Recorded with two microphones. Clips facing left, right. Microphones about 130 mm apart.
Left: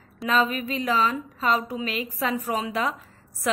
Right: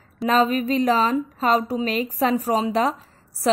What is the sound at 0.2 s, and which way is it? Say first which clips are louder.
A woman's voice: right 5 dB; 40° right (ahead or behind).